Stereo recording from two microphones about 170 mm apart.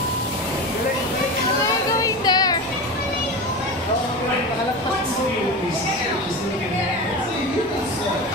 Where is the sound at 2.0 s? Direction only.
20° left (ahead or behind).